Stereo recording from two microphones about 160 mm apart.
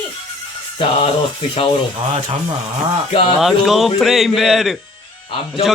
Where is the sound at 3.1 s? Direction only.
35° left (ahead or behind).